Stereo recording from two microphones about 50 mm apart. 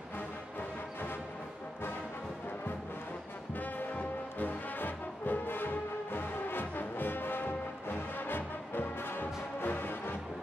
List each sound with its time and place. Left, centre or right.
3.5 s music: left